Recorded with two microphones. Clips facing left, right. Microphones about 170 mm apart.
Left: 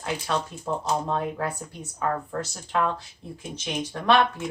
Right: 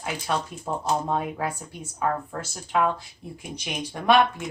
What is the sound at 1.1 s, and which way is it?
Speech, 10° right (ahead or behind).